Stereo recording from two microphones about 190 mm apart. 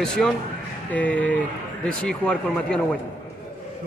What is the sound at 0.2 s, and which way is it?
A man's voice, centre (ahead or behind).